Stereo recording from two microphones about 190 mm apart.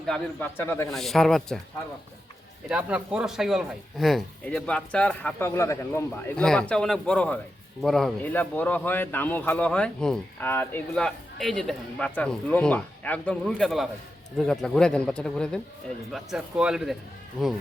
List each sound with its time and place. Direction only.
0.0 s a man's voice: 5° left (ahead or behind)
2.6 s a man's voice: 5° right (ahead or behind)